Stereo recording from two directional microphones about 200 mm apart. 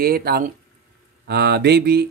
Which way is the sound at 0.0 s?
50° right (ahead or behind).